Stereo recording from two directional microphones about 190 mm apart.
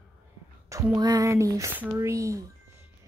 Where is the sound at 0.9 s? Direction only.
20° right (ahead or behind).